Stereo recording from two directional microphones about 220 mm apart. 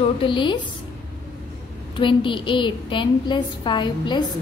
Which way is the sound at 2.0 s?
20° left (ahead or behind).